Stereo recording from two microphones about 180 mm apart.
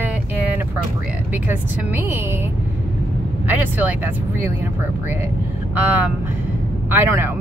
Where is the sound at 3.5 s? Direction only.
10° right (ahead or behind).